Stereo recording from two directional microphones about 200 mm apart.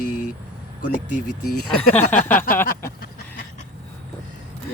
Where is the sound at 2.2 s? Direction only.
10° left (ahead or behind).